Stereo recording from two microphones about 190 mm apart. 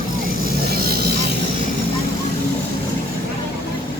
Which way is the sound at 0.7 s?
55° right (ahead or behind).